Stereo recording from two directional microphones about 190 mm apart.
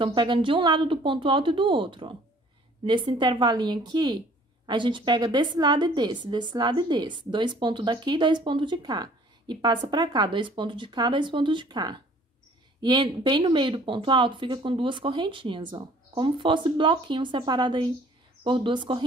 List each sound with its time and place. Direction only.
0.0 s a woman's voice: 25° right (ahead or behind)